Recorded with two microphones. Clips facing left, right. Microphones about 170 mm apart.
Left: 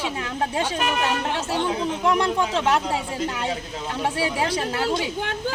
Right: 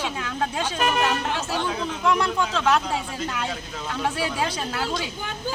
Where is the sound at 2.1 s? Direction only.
25° left (ahead or behind).